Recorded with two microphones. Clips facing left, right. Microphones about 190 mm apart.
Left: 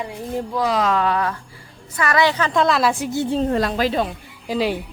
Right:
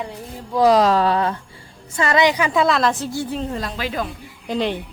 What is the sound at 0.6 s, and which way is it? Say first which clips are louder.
A woman's voice: right 6 dB; 35° right (ahead or behind).